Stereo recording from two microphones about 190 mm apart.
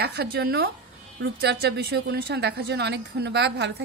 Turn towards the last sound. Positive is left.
turn(degrees=-60)  # may be behind; listen again after turning